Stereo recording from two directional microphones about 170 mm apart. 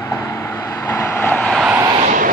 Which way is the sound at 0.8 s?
15° left (ahead or behind).